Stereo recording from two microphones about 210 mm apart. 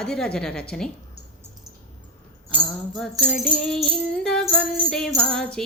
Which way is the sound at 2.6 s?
Centre (ahead or behind).